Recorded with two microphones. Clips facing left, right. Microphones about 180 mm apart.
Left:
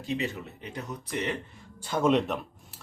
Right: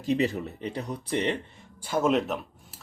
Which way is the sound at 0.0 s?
35° right (ahead or behind).